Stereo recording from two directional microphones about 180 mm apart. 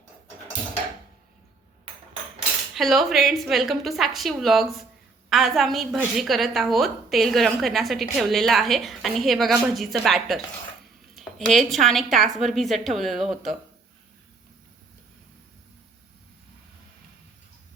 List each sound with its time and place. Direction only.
2.7 s a woman's voice: centre (ahead or behind)